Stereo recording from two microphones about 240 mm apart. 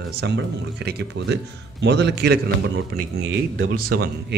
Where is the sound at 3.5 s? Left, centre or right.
Right.